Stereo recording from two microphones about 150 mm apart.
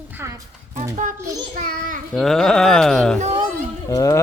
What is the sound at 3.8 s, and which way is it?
Speech, 20° left (ahead or behind).